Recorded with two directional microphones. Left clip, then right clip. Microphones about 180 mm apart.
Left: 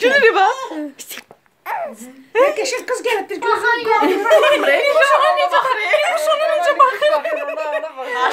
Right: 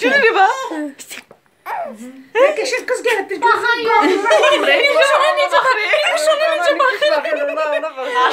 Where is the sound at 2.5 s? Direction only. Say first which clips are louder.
Right 2 dB; 40° left (ahead or behind).